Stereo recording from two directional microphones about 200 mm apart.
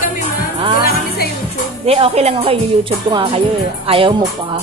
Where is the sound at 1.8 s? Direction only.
30° right (ahead or behind).